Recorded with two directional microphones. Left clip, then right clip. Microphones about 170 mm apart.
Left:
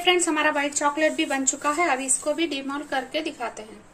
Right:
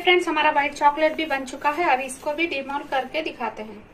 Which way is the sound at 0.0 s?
55° left (ahead or behind).